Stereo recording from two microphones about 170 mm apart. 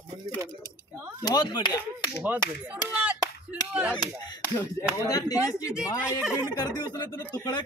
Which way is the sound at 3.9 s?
25° left (ahead or behind).